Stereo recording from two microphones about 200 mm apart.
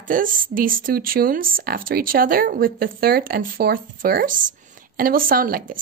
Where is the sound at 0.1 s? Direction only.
45° right (ahead or behind).